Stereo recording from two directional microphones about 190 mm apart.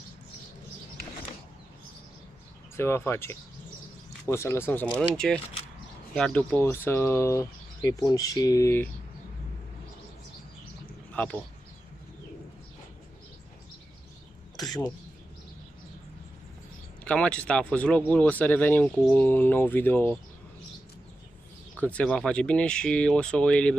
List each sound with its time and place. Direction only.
2.7 s speech: 15° left (ahead or behind)
14.6 s bird: 20° left (ahead or behind)
17.0 s speech: 5° left (ahead or behind)
21.8 s speech: 5° left (ahead or behind)